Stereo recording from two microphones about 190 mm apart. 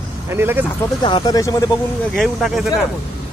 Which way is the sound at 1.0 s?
25° left (ahead or behind).